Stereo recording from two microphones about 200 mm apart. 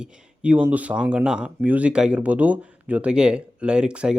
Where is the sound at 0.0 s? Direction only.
5° right (ahead or behind).